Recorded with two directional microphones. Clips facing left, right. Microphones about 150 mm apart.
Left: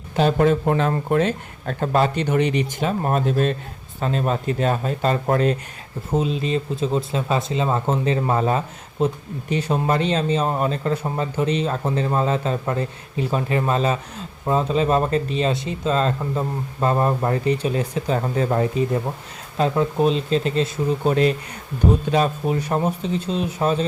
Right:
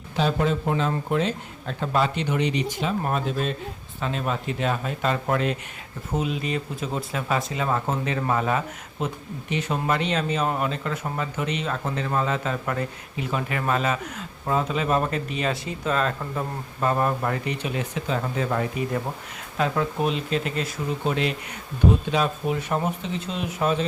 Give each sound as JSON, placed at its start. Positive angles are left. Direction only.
{"t": 0.2, "sound": "speech", "side_deg": 50}
{"t": 3.0, "sound": "speech", "side_deg": 40}